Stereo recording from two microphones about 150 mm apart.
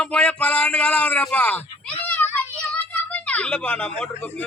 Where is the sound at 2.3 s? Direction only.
10° left (ahead or behind).